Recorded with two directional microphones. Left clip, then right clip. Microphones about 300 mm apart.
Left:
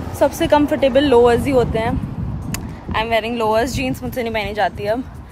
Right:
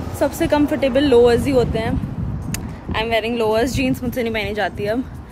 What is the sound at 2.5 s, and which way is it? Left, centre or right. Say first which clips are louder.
Speech: left 1 dB; centre.